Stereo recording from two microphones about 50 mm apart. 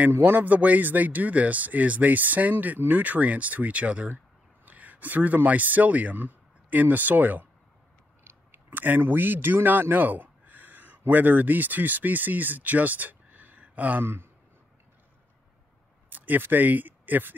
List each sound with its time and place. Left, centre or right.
0.2 s speech: right
8.2 s speech: right
16.1 s speech: right